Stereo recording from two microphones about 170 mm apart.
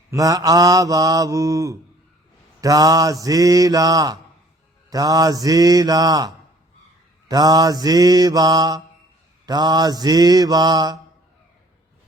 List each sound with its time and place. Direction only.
0.1 s mantra: 20° right (ahead or behind)